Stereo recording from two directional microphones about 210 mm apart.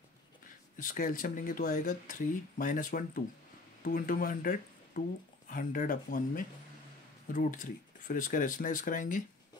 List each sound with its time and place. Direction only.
0.7 s speech: 40° left (ahead or behind)